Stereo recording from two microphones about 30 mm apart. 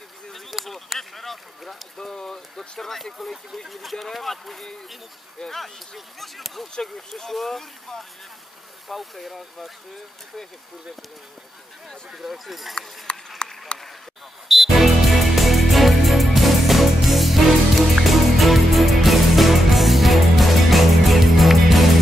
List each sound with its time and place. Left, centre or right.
0.5 s a sound: centre
2.0 s speech: left; by 4.6 s centre
5.4 s speech: left
5.9 s speech: centre
12.2 s speech: centre
13.1 s clip-clop: left
13.7 s a sound: left
14.5 s music: centre